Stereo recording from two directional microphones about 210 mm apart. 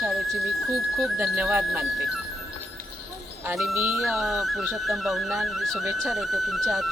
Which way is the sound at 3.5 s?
Centre (ahead or behind).